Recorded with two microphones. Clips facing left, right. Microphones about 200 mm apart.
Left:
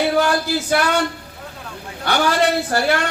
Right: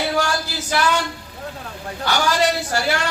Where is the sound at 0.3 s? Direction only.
55° left (ahead or behind).